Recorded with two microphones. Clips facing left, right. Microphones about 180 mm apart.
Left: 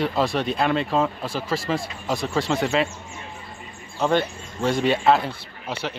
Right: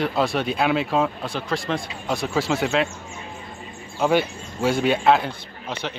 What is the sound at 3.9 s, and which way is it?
Speech, 5° right (ahead or behind).